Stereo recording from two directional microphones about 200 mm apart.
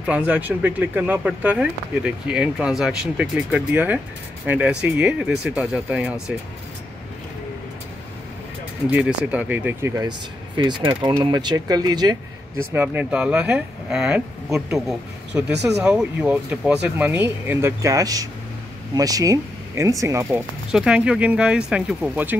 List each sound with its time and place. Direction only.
0.0 s speech: 5° right (ahead or behind)
8.9 s speech: 5° right (ahead or behind)
10.5 s speech: 25° right (ahead or behind)
12.7 s speech: 10° right (ahead or behind)
20.7 s speech: 5° right (ahead or behind)